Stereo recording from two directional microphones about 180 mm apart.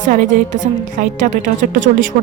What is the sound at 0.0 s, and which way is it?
Speech, 45° right (ahead or behind).